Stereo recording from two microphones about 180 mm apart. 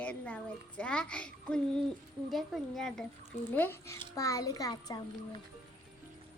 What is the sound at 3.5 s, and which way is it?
Speech, 10° left (ahead or behind).